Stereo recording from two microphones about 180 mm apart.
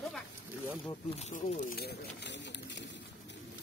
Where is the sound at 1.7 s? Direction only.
65° left (ahead or behind).